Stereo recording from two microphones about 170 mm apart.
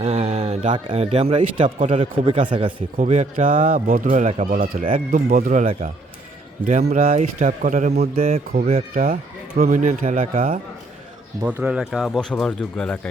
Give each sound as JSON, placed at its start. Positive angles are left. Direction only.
{"t": 0.0, "sound": "speech", "side_deg": -40}
{"t": 3.0, "sound": "speech", "side_deg": -45}
{"t": 7.3, "sound": "speech", "side_deg": -50}
{"t": 8.1, "sound": "speech", "side_deg": -35}
{"t": 11.4, "sound": "speech", "side_deg": -10}